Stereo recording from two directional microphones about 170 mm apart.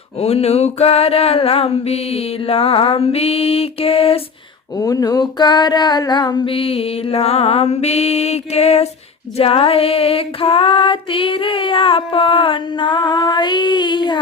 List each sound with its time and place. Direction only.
0.2 s female singing: 35° left (ahead or behind)
4.8 s female singing: 20° left (ahead or behind)